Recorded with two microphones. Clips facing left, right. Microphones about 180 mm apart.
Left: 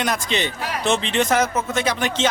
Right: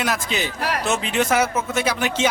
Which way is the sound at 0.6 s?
70° right (ahead or behind).